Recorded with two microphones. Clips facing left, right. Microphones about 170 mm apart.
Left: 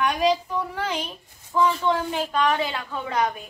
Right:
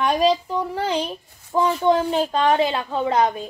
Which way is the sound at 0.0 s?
35° right (ahead or behind).